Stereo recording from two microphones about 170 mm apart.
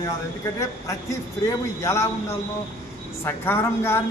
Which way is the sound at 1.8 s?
15° left (ahead or behind).